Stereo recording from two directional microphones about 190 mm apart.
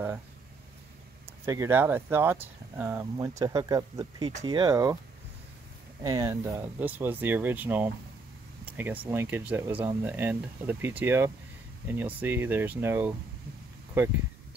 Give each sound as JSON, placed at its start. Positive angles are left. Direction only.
{"t": 1.4, "sound": "speech", "side_deg": -15}
{"t": 6.0, "sound": "speech", "side_deg": -15}